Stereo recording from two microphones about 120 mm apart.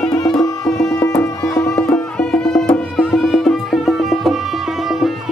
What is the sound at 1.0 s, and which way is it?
Music, 25° left (ahead or behind).